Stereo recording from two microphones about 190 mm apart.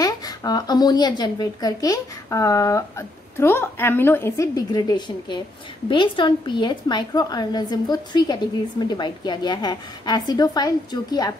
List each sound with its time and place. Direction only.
0.0 s a woman's voice: 20° left (ahead or behind)